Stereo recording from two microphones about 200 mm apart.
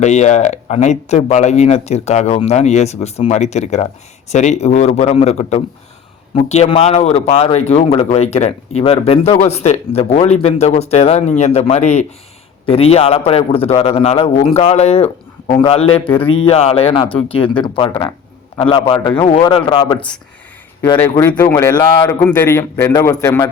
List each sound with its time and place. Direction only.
0.0 s a man's voice: 35° left (ahead or behind)
21.0 s a man's voice: 10° left (ahead or behind)